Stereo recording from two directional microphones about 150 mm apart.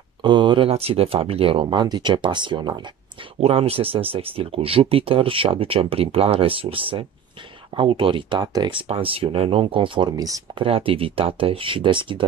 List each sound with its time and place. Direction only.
0.2 s speech: 30° right (ahead or behind)
3.3 s speech: 40° right (ahead or behind); by 10.6 s 25° right (ahead or behind)
10.6 s speech: 35° right (ahead or behind)